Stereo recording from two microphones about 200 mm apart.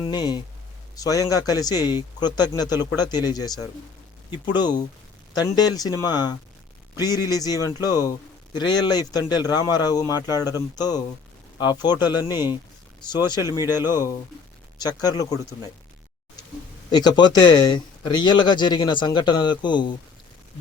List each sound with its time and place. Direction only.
0.0 s speech: 20° left (ahead or behind)
13.7 s speech: 10° right (ahead or behind)
14.8 s speech: 20° left (ahead or behind)
16.9 s speech: 20° left (ahead or behind)